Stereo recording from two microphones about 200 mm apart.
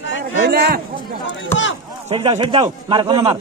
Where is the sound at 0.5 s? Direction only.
50° right (ahead or behind).